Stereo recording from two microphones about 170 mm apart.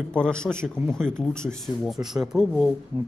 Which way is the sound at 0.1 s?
5° left (ahead or behind).